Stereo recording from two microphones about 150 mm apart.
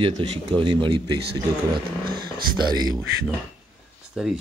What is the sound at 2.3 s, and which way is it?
Speech, 30° right (ahead or behind).